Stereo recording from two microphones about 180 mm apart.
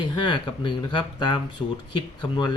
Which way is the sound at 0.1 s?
25° left (ahead or behind).